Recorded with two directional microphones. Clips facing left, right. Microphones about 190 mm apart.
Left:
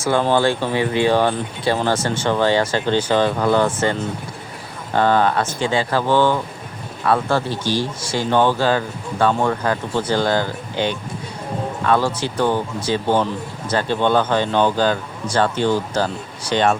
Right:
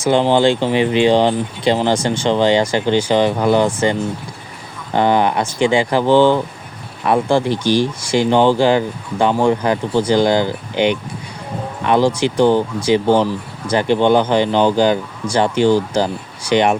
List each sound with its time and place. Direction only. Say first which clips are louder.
0.0 s speech: right 4 dB; 20° right (ahead or behind)
4.9 s speech: right 2 dB; 15° right (ahead or behind)